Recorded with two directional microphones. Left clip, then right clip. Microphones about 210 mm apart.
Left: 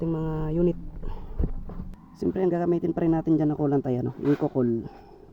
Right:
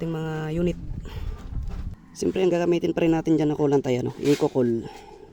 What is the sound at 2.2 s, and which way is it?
Speech, 5° left (ahead or behind).